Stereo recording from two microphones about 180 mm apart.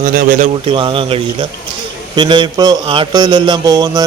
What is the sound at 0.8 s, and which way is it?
A man's voice, 30° right (ahead or behind).